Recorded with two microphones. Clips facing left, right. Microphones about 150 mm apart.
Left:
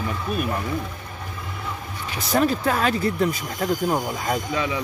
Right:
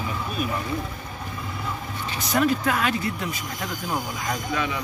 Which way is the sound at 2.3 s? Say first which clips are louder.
Left 2 dB; 35° left (ahead or behind).